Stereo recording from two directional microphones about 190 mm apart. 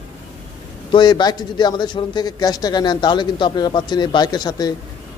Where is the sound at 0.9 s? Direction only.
25° left (ahead or behind).